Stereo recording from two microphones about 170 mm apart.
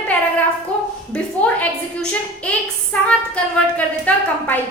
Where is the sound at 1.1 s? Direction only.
10° left (ahead or behind).